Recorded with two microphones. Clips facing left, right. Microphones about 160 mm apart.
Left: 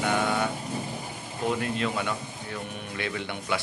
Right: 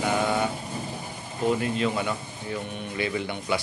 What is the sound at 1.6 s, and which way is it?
A man's voice, 5° right (ahead or behind).